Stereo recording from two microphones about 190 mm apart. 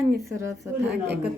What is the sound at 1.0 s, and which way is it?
Speech, 60° right (ahead or behind).